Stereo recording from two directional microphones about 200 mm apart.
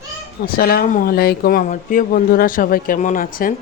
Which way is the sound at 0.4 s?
45° left (ahead or behind).